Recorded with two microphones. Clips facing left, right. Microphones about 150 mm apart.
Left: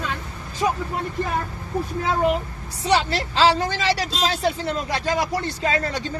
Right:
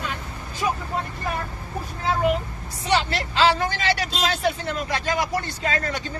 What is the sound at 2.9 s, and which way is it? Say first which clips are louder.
Speech: left 2 dB; 35° left (ahead or behind).